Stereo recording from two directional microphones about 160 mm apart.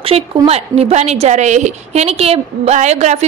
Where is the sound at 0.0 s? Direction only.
40° right (ahead or behind).